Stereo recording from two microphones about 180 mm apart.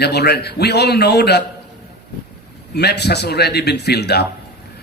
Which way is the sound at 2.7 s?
65° left (ahead or behind).